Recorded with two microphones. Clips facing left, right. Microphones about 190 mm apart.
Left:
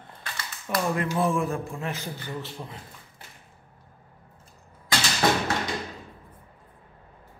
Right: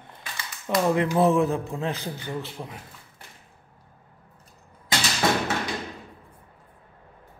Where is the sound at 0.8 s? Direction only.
25° right (ahead or behind).